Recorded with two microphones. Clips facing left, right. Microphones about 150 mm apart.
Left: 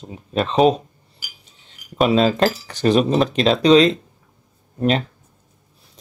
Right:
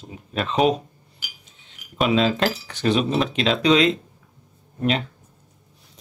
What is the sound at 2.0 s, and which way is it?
Speech, 40° left (ahead or behind).